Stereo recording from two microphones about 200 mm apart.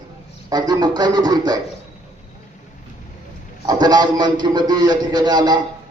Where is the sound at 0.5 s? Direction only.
20° right (ahead or behind).